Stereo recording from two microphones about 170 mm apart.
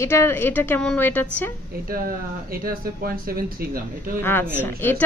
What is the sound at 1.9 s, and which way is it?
Speech, 60° right (ahead or behind).